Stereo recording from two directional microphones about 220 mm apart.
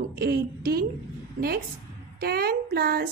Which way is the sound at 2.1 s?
45° right (ahead or behind).